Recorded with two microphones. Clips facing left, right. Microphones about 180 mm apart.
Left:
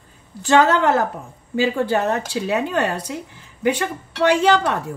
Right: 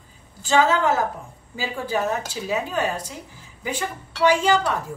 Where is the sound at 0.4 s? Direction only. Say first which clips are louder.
Left 4 dB; 65° left (ahead or behind).